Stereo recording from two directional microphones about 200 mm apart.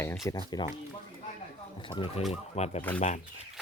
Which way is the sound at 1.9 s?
25° left (ahead or behind).